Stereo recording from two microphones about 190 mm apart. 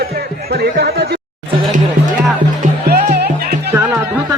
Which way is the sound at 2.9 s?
55° right (ahead or behind).